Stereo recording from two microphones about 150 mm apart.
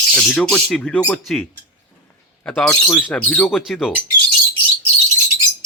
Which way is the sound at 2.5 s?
5° left (ahead or behind).